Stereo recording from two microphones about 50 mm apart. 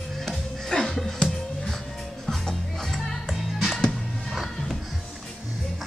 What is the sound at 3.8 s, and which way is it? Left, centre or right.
Music, centre.